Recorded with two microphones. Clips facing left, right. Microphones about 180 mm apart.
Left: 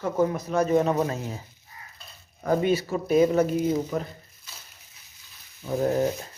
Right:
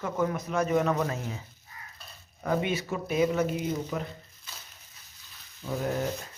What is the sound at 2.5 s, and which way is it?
Speech, 35° left (ahead or behind).